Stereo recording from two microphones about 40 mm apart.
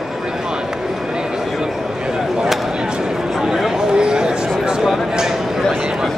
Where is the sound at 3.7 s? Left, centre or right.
Centre.